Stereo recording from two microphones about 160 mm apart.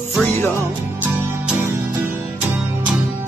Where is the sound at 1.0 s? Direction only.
10° right (ahead or behind).